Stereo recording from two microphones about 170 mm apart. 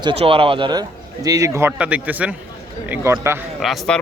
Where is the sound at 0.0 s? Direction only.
30° right (ahead or behind); by 3.3 s 15° right (ahead or behind).